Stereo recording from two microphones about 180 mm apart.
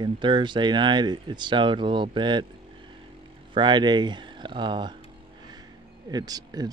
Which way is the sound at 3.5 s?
25° right (ahead or behind).